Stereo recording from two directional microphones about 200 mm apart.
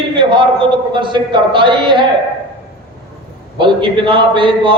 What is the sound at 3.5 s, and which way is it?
A man's voice, 25° right (ahead or behind).